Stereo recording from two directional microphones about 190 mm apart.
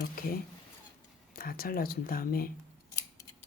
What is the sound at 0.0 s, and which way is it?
Speech, 50° left (ahead or behind).